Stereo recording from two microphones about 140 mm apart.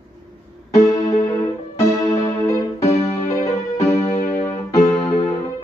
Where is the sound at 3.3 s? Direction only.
20° left (ahead or behind).